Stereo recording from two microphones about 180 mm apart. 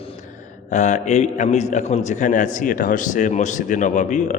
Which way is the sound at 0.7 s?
40° left (ahead or behind).